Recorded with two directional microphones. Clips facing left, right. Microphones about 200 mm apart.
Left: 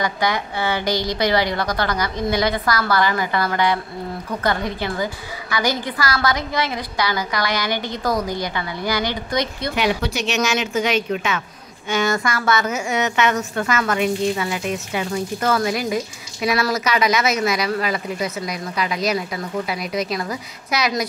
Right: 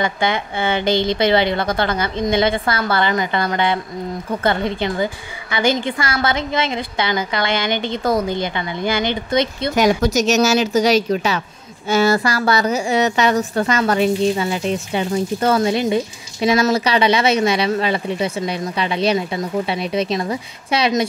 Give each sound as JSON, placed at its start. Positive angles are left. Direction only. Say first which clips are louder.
{"t": 0.0, "sound": "a woman's voice", "louder": "right 2 dB", "side_deg": -25}
{"t": 9.8, "sound": "a woman's voice", "louder": "right 7 dB", "side_deg": -45}